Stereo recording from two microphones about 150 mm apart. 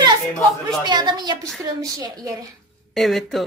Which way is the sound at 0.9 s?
30° right (ahead or behind).